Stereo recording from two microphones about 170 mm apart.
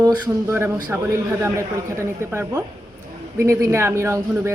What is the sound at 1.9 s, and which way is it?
A man's voice, 15° right (ahead or behind).